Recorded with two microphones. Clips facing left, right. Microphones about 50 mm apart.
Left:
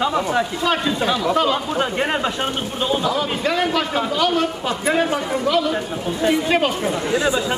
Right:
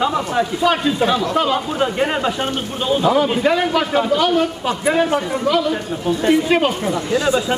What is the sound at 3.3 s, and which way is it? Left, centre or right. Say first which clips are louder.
A man's voice: right 4 dB; centre.